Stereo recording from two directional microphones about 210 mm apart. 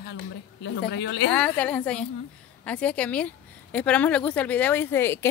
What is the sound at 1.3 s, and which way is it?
A woman's voice, 5° left (ahead or behind).